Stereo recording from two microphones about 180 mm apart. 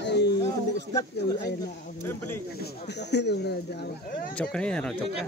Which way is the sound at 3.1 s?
65° left (ahead or behind).